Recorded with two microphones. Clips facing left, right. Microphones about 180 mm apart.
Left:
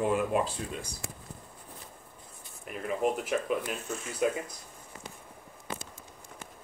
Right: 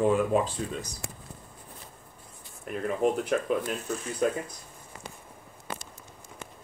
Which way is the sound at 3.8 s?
35° right (ahead or behind).